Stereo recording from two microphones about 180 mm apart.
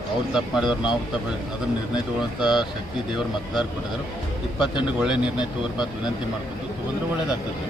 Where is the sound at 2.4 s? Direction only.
5° right (ahead or behind).